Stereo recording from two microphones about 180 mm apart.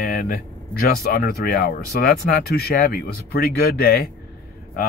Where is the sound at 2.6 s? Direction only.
60° left (ahead or behind).